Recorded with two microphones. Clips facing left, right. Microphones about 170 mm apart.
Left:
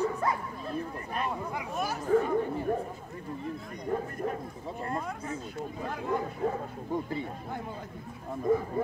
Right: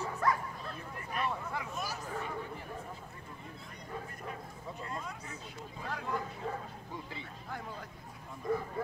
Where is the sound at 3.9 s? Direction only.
50° left (ahead or behind).